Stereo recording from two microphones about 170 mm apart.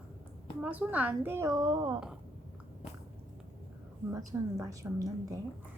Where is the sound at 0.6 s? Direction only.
10° right (ahead or behind); by 2.0 s 25° right (ahead or behind).